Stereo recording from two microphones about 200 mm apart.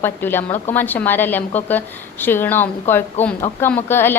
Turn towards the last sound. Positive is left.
turn(degrees=10)  # may be behind; listen again after turning